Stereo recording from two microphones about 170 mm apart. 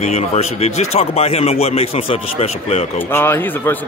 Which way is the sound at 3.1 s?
15° left (ahead or behind).